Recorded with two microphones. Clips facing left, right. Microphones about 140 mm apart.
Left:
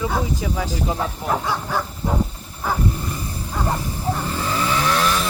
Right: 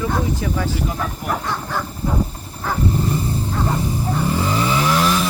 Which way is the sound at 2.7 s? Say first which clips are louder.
Even; 10° left (ahead or behind).